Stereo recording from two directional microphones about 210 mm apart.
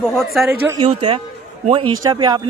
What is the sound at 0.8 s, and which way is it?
Speech, 25° right (ahead or behind).